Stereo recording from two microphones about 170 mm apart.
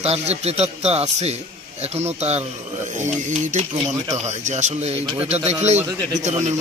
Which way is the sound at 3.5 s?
40° right (ahead or behind).